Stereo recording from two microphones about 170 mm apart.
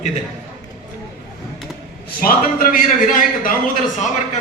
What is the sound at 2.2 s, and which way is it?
A man's voice, 55° left (ahead or behind).